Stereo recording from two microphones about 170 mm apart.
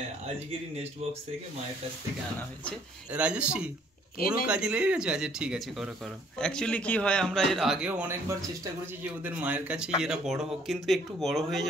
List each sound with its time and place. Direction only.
3.1 s a man's voice: 5° right (ahead or behind)
9.2 s a man's voice: 10° right (ahead or behind)